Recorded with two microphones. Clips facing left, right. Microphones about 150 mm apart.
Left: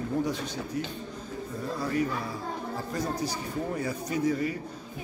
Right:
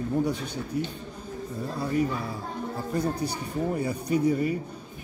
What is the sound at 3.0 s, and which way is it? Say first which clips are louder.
Speech: right 3 dB; 60° right (ahead or behind).